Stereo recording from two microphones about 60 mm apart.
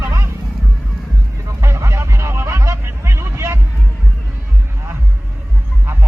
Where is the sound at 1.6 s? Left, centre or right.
Right.